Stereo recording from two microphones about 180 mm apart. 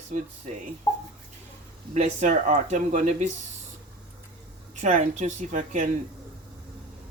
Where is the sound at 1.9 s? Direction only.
40° right (ahead or behind).